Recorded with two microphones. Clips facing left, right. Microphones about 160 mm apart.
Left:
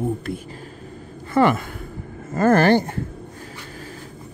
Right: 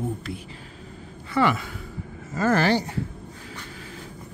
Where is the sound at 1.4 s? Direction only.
50° left (ahead or behind).